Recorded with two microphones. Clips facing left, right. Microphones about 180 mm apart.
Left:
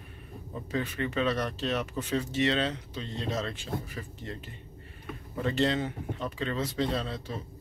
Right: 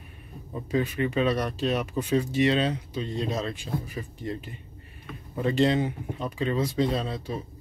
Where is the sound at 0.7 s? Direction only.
10° right (ahead or behind).